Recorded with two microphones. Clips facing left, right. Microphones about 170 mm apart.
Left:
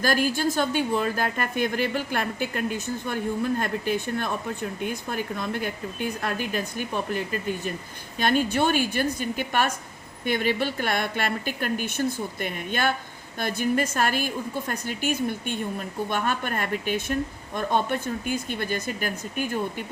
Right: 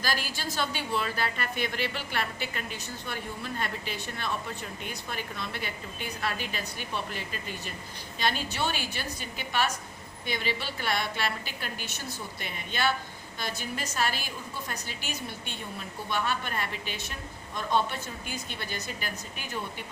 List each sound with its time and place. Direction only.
0.0 s a woman's voice: 50° left (ahead or behind)